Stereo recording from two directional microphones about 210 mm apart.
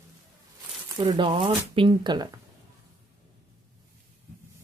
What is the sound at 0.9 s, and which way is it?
Speech, 20° right (ahead or behind).